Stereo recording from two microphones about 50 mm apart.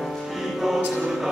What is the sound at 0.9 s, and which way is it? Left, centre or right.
Music, centre.